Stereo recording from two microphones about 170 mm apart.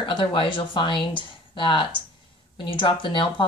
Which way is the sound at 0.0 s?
30° left (ahead or behind).